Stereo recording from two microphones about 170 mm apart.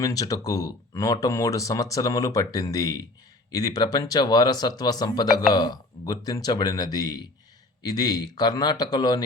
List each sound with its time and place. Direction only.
0.0 s speech: 20° left (ahead or behind)